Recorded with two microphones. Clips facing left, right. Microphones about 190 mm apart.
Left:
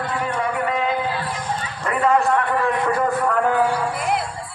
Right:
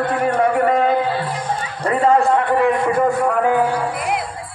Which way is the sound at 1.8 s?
30° right (ahead or behind).